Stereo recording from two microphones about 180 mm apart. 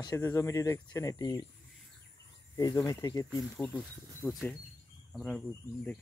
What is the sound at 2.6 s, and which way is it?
Speech, 20° left (ahead or behind).